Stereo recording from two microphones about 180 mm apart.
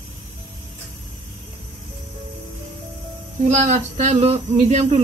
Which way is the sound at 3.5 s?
40° right (ahead or behind).